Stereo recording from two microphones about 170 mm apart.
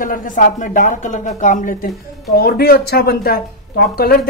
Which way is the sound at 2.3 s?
65° left (ahead or behind).